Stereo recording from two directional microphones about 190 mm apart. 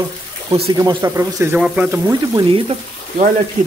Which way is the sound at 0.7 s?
20° right (ahead or behind).